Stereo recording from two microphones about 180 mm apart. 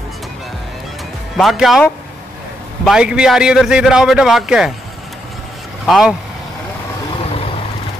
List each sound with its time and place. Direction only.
1.3 s a man's voice: centre (ahead or behind)
5.9 s a man's voice: centre (ahead or behind)